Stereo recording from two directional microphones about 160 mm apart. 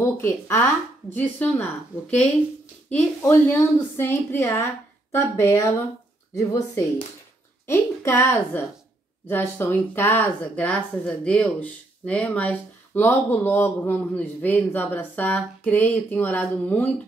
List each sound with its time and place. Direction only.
0.0 s speech: 15° left (ahead or behind)
2.9 s speech: 10° left (ahead or behind)